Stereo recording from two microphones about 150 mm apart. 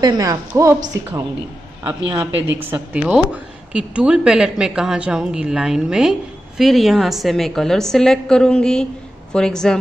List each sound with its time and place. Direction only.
0.0 s a woman's voice: 25° right (ahead or behind)
2.1 s a woman's voice: 15° right (ahead or behind); by 9.8 s 5° left (ahead or behind)